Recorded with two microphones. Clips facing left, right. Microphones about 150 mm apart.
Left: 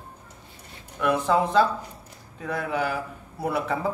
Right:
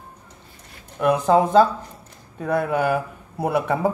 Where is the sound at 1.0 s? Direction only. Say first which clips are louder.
Right 5 dB; 40° right (ahead or behind).